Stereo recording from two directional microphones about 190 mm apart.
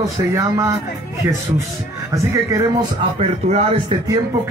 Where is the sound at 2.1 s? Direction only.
15° right (ahead or behind).